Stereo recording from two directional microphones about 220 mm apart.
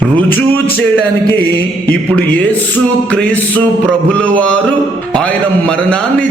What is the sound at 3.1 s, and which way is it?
A man's voice, 5° left (ahead or behind).